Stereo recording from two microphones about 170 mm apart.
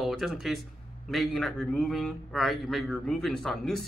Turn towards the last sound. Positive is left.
turn(degrees=5)  # may be behind; listen again after turning